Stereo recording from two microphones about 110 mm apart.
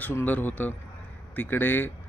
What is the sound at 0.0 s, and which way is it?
Speech, 15° left (ahead or behind).